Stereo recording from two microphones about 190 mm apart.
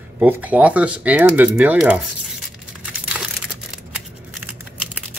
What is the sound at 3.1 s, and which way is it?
Crushing, 5° right (ahead or behind).